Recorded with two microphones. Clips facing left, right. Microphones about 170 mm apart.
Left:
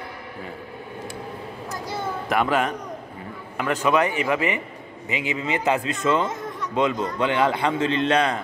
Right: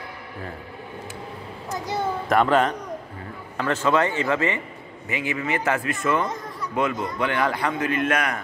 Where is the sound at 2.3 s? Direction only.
5° left (ahead or behind); by 8.4 s 25° left (ahead or behind).